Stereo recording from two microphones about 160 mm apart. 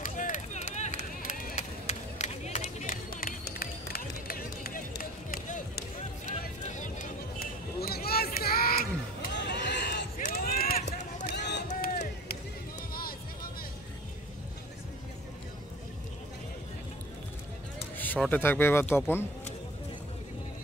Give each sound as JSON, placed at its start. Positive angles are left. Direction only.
{"t": 0.0, "sound": "run", "side_deg": 50}
{"t": 9.3, "sound": "a sound", "side_deg": 90}
{"t": 10.1, "sound": "run", "side_deg": 50}
{"t": 10.9, "sound": "run", "side_deg": 50}
{"t": 11.3, "sound": "run", "side_deg": 90}
{"t": 12.9, "sound": "music", "side_deg": 65}
{"t": 17.9, "sound": "speech", "side_deg": 10}